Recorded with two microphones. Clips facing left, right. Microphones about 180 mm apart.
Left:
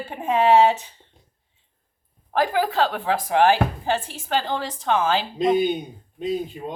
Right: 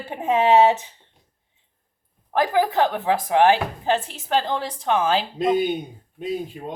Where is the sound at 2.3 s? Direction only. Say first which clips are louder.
Right 1 dB; 20° right (ahead or behind).